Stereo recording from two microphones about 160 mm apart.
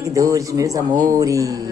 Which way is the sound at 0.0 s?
20° right (ahead or behind).